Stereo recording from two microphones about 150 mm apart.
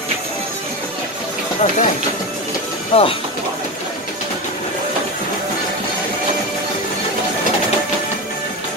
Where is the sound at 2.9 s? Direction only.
40° left (ahead or behind).